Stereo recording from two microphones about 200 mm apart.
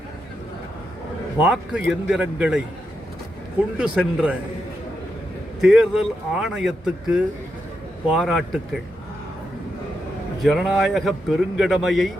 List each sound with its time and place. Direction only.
1.4 s a man's voice: 5° right (ahead or behind)
3.8 s a man's voice: 5° right (ahead or behind)
5.5 s a man's voice: centre (ahead or behind)
10.4 s a man's voice: centre (ahead or behind)